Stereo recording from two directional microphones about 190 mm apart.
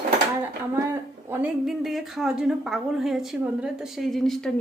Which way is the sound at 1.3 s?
5° right (ahead or behind).